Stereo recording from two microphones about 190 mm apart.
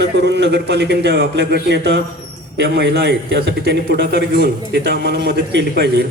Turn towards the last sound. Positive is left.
turn(degrees=-60)  # may be behind; listen again after turning